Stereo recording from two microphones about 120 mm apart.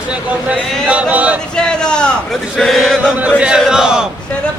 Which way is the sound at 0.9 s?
10° right (ahead or behind).